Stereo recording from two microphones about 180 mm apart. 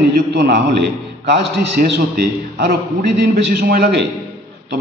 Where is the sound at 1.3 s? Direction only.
65° right (ahead or behind).